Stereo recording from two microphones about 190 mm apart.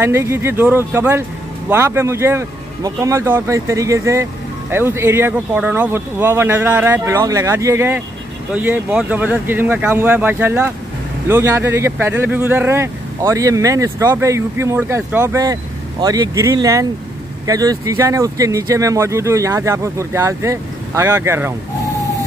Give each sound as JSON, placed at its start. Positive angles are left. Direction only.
{"t": 0.0, "sound": "speech", "side_deg": -15}